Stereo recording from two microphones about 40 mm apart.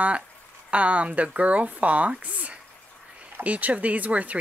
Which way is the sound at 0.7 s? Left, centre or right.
Right.